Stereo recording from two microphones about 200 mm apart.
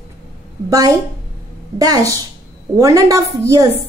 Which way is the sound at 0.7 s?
20° right (ahead or behind).